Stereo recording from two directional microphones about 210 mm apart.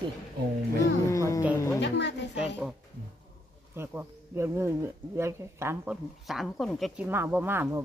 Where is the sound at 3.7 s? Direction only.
10° right (ahead or behind).